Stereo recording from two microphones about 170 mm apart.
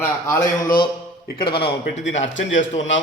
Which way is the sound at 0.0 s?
15° left (ahead or behind).